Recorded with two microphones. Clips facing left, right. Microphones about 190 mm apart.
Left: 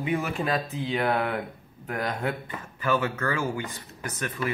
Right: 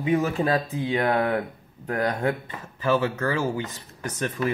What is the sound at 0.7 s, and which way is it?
Speech, 15° right (ahead or behind).